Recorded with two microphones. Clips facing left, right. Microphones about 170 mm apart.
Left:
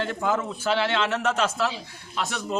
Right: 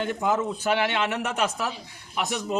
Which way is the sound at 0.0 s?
15° right (ahead or behind).